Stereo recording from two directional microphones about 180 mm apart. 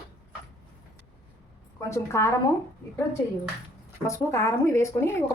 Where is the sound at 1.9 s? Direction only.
15° left (ahead or behind).